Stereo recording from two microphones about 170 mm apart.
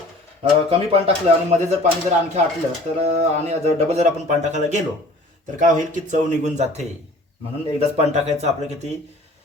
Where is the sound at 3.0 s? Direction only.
40° right (ahead or behind).